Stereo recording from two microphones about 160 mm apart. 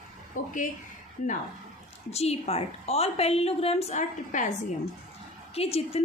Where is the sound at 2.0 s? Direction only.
40° left (ahead or behind).